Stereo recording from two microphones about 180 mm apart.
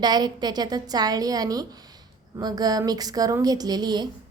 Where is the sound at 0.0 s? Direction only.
25° right (ahead or behind).